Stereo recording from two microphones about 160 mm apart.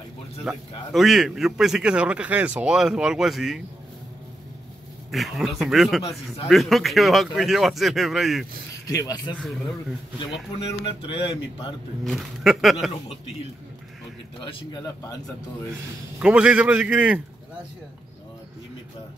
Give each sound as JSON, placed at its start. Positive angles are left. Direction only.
{"t": 0.5, "sound": "a man's voice", "side_deg": 0}
{"t": 5.1, "sound": "a man's voice", "side_deg": 0}
{"t": 8.8, "sound": "speech", "side_deg": 25}
{"t": 9.4, "sound": "a man's voice", "side_deg": 0}
{"t": 10.6, "sound": "speech", "side_deg": 35}
{"t": 12.0, "sound": "a man's voice", "side_deg": 0}
{"t": 14.4, "sound": "speech", "side_deg": 25}
{"t": 16.2, "sound": "a man's voice", "side_deg": -5}